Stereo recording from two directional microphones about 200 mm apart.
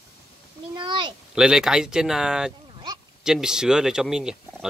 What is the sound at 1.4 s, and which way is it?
Speech, 5° right (ahead or behind).